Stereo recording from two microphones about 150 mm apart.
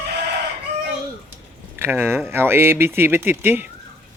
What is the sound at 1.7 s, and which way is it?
Speech, 15° right (ahead or behind).